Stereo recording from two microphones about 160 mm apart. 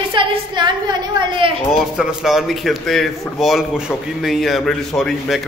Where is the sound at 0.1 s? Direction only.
30° right (ahead or behind).